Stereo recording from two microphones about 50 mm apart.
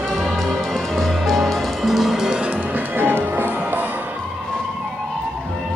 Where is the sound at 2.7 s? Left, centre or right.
Right.